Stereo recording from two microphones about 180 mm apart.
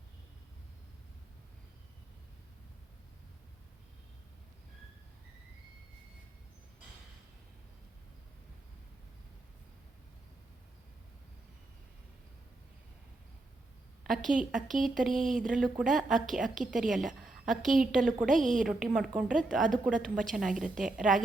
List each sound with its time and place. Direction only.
14.0 s a sound: centre (ahead or behind)
14.3 s a woman's voice: centre (ahead or behind)
18.3 s a woman's voice: 45° right (ahead or behind)
18.6 s a woman's voice: 5° right (ahead or behind)